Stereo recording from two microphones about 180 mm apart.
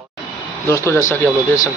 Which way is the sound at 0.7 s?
15° left (ahead or behind).